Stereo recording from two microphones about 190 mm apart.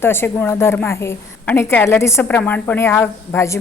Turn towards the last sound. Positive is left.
turn(degrees=10)  # may be behind; listen again after turning